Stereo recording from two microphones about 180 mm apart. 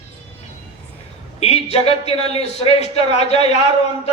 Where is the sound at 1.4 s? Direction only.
35° left (ahead or behind).